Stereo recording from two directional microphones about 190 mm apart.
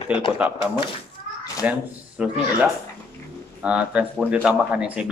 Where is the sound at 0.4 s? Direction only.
5° right (ahead or behind).